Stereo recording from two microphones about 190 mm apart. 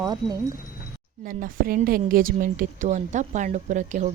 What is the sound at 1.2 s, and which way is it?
A woman's voice, 50° right (ahead or behind).